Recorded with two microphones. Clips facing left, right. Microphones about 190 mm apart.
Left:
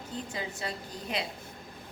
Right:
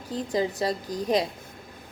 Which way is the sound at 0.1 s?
35° right (ahead or behind).